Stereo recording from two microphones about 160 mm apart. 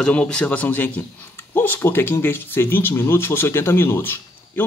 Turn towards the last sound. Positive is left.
turn(degrees=15)  # may be behind; listen again after turning